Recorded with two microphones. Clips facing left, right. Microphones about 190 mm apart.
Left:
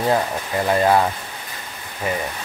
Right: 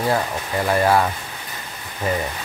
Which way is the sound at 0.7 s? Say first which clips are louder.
Left 1 dB; 20° left (ahead or behind).